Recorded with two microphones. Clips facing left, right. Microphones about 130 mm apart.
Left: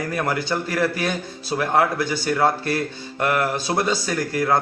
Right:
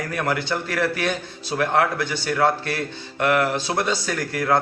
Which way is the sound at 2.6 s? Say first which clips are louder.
Left 3 dB; 40° left (ahead or behind).